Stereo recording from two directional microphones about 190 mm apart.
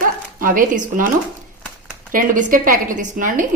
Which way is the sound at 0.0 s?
45° right (ahead or behind).